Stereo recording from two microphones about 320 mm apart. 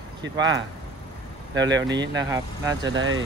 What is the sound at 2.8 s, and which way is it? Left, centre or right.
Speech, right.